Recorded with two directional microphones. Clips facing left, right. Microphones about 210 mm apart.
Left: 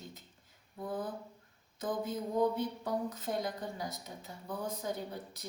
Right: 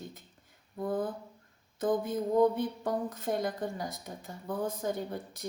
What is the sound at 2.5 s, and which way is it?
A woman's voice, 50° right (ahead or behind).